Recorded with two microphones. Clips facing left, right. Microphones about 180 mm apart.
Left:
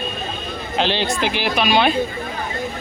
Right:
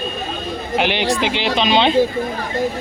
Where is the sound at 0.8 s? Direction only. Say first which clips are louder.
Right 1 dB; 15° right (ahead or behind).